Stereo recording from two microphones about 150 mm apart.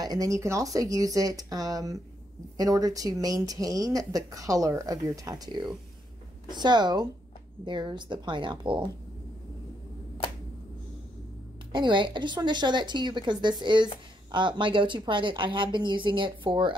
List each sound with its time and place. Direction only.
0.0 s a woman's voice: 25° right (ahead or behind)
11.7 s a woman's voice: 30° right (ahead or behind)